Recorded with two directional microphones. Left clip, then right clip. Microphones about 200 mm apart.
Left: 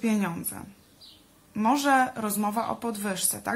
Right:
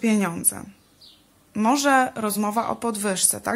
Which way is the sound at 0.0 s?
45° right (ahead or behind).